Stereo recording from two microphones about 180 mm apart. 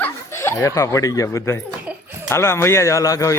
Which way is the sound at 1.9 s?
5° right (ahead or behind).